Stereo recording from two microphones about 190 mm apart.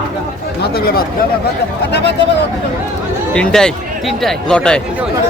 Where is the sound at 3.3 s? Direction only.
5° left (ahead or behind).